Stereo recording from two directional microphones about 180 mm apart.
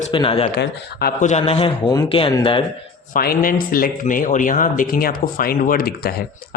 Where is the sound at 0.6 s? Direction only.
60° left (ahead or behind).